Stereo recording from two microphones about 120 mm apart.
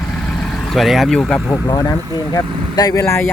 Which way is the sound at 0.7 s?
Centre (ahead or behind).